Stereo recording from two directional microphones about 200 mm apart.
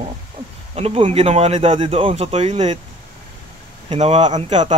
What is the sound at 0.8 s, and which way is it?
Speech, 30° right (ahead or behind).